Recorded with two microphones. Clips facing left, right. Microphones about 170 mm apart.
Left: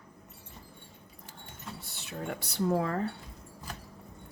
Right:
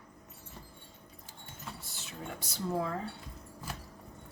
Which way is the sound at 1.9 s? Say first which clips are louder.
Left 8 dB; 65° left (ahead or behind).